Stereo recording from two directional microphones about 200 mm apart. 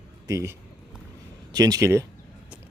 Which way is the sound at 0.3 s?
15° right (ahead or behind).